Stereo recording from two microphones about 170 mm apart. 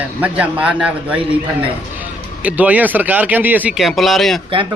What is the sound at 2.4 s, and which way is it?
Speech, 10° right (ahead or behind).